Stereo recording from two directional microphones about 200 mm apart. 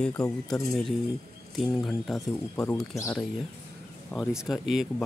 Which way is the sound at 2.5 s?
10° left (ahead or behind).